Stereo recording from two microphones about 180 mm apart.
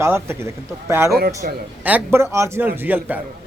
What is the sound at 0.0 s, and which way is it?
A man's voice, 15° right (ahead or behind).